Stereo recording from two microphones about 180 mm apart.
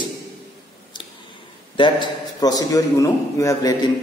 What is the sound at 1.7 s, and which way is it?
A man's voice, 25° left (ahead or behind).